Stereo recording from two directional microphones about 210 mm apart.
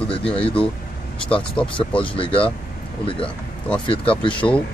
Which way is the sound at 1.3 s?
5° left (ahead or behind).